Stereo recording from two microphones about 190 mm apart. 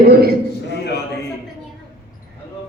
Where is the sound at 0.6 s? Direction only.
60° left (ahead or behind).